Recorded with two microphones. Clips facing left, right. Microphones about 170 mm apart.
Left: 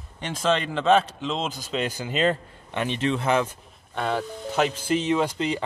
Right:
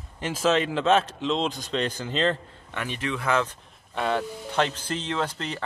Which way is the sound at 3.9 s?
Centre (ahead or behind).